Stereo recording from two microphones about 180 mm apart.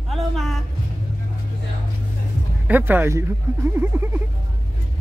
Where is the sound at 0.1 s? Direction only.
Centre (ahead or behind).